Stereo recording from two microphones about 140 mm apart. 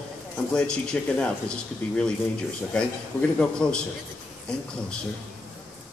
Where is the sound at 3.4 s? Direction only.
5° left (ahead or behind).